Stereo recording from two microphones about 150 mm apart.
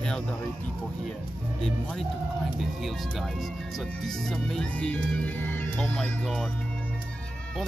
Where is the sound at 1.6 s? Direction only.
5° left (ahead or behind).